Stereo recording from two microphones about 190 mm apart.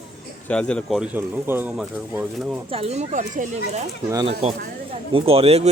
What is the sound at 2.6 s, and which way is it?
Speech, 30° right (ahead or behind).